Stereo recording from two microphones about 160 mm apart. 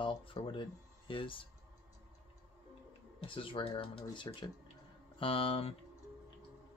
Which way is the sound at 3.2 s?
35° left (ahead or behind).